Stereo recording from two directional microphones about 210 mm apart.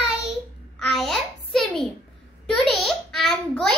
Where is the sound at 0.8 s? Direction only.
Centre (ahead or behind).